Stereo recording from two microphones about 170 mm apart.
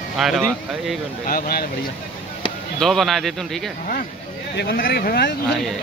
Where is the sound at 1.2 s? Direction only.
60° left (ahead or behind).